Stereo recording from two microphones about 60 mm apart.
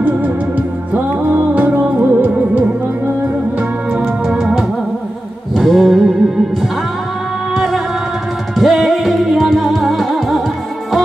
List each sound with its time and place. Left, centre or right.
0.0 s music: right
4.0 s organ: centre
5.5 s music: centre
7.5 s music: centre